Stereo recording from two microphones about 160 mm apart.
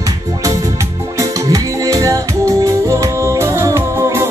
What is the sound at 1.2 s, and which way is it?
Music, 20° right (ahead or behind).